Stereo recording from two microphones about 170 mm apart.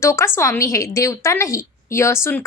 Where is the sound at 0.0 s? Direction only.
15° left (ahead or behind).